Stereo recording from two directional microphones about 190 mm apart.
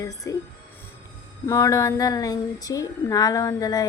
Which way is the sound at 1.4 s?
15° left (ahead or behind).